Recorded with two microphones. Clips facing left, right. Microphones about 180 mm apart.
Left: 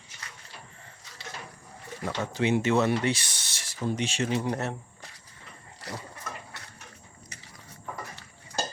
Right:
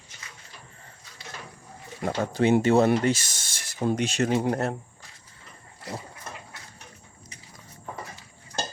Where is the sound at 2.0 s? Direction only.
40° right (ahead or behind).